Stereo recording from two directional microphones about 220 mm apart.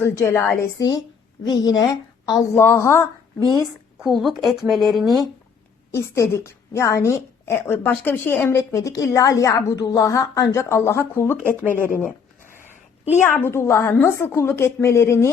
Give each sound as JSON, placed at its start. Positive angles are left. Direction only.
{"t": 0.0, "sound": "a woman's voice", "side_deg": 10}
{"t": 4.0, "sound": "speech", "side_deg": 0}
{"t": 5.9, "sound": "a woman's voice", "side_deg": 10}
{"t": 13.1, "sound": "a woman's voice", "side_deg": 10}